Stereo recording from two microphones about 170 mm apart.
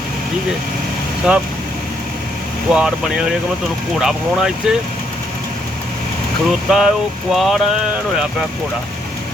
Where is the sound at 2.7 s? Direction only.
5° right (ahead or behind).